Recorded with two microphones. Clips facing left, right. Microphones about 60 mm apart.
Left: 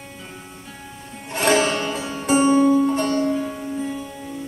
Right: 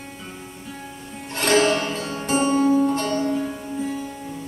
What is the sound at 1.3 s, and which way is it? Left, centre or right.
Music, centre.